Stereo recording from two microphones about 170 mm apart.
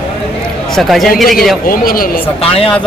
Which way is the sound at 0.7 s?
Centre (ahead or behind).